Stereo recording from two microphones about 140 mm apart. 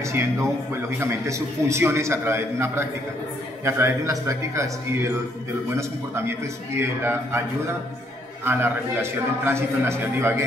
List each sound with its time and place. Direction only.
0.0 s a man's voice: 20° right (ahead or behind)